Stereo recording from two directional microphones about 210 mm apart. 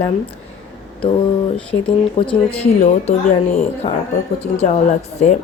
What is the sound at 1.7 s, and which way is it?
Speech, 25° left (ahead or behind).